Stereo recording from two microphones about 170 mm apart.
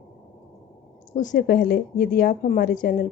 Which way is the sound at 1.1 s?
50° left (ahead or behind).